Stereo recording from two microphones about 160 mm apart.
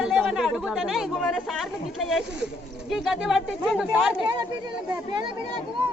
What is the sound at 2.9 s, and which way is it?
Speech, centre (ahead or behind).